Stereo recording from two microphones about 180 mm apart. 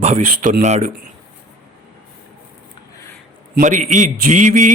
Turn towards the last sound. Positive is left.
turn(degrees=-45)  # may be behind; listen again after turning